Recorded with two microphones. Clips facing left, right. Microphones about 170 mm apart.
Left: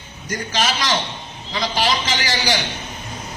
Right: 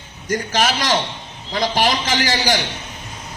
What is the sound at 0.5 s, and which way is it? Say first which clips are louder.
A man's voice: right 2 dB; 50° right (ahead or behind).